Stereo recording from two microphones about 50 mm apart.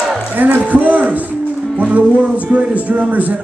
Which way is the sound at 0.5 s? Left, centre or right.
Right.